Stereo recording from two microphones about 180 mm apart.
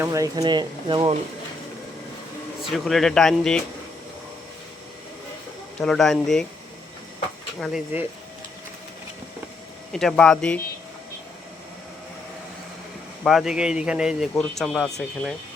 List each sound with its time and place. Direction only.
0.0 s speech: 20° right (ahead or behind)
2.6 s speech: centre (ahead or behind)
5.8 s speech: 5° left (ahead or behind)
7.6 s speech: 5° right (ahead or behind)
9.9 s speech: 5° left (ahead or behind)
13.2 s speech: centre (ahead or behind)